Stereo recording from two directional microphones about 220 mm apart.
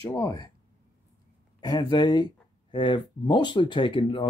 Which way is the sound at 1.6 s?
20° left (ahead or behind).